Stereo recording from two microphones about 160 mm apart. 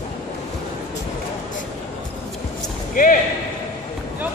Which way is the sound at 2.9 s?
55° left (ahead or behind).